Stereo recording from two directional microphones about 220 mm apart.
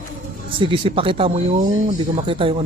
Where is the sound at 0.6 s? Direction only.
25° right (ahead or behind).